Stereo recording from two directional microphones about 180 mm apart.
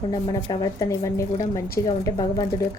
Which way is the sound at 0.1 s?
25° left (ahead or behind).